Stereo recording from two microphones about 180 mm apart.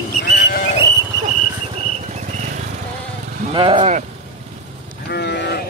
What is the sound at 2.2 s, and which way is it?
Vehicle, 40° right (ahead or behind).